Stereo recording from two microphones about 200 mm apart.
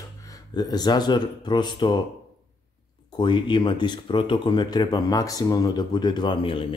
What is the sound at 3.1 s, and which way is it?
Speech, 25° left (ahead or behind).